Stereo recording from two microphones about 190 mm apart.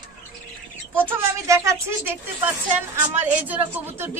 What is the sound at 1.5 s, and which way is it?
Speech, 15° right (ahead or behind).